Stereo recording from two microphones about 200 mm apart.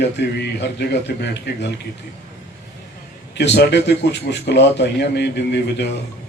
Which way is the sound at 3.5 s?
60° left (ahead or behind).